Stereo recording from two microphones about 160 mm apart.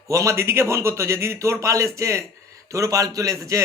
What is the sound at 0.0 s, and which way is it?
A man's voice, 20° right (ahead or behind).